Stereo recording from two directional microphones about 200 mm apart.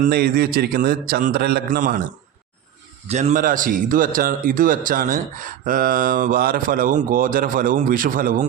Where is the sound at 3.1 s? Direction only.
35° right (ahead or behind).